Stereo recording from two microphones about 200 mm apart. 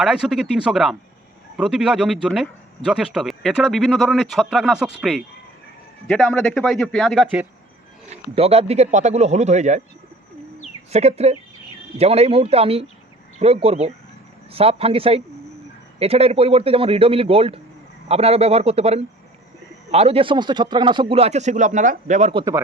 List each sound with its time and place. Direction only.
0.0 s speech: centre (ahead or behind)
8.1 s a man's voice: 30° right (ahead or behind)
10.9 s a man's voice: 30° right (ahead or behind)